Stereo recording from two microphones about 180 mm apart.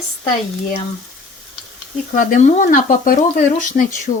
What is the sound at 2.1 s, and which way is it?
Speech, 45° left (ahead or behind).